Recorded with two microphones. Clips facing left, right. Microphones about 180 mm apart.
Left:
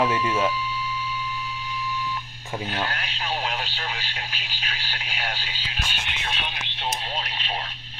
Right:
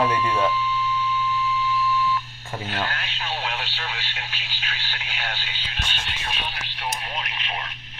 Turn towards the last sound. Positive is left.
turn(degrees=20)  # may be behind; listen again after turning